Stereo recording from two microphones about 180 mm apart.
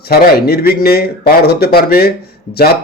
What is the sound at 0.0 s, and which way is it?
Speech, 60° left (ahead or behind).